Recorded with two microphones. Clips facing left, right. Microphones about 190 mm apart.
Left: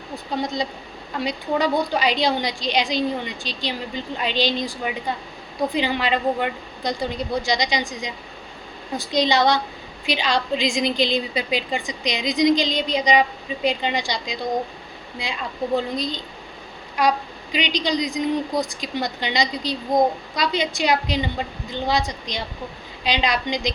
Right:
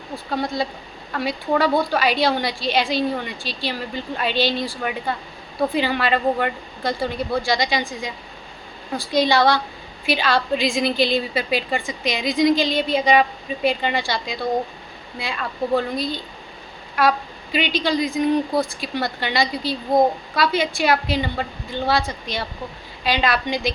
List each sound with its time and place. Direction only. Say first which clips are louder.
0.4 s a woman's voice: right 1 dB; 20° left (ahead or behind)
9.0 s a woman's voice: right 2 dB; 20° left (ahead or behind)